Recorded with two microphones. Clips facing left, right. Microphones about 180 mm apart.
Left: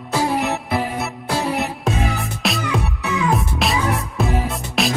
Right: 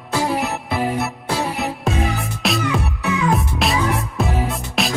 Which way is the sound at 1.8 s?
Centre (ahead or behind).